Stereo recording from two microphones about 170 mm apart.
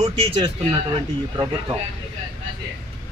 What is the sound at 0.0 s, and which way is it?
Speech, 30° right (ahead or behind).